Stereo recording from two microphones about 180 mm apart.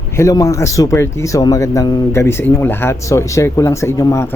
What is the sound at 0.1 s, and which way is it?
Speech, 15° left (ahead or behind).